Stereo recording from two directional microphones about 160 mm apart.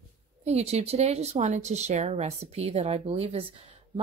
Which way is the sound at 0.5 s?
40° right (ahead or behind).